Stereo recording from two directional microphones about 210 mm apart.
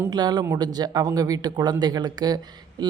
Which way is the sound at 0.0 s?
20° right (ahead or behind).